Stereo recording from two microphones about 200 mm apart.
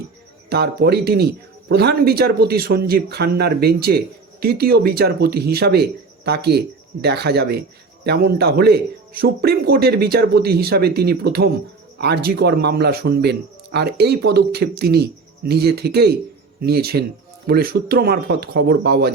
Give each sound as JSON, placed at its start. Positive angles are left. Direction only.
{"t": 0.5, "sound": "speech", "side_deg": -55}